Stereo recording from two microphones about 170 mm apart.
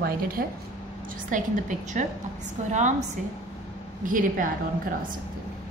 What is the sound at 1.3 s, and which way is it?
Speech, 50° right (ahead or behind).